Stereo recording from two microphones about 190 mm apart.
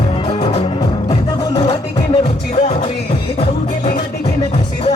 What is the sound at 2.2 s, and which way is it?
Music, 35° left (ahead or behind).